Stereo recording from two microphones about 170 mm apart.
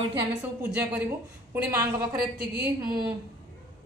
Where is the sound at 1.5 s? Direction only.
15° right (ahead or behind).